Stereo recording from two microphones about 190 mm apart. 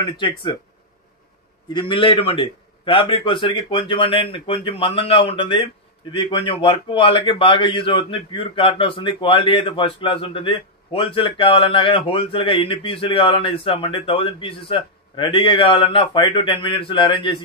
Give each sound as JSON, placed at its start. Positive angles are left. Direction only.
{"t": 0.0, "sound": "a man's voice", "side_deg": 25}
{"t": 1.7, "sound": "a man's voice", "side_deg": 25}